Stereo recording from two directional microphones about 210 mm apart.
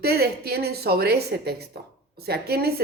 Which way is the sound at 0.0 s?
50° right (ahead or behind).